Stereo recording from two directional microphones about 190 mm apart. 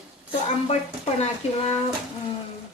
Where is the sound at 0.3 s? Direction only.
35° left (ahead or behind).